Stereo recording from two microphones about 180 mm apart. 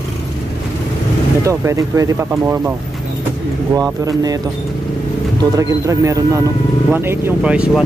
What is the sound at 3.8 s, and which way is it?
Speech, 20° right (ahead or behind).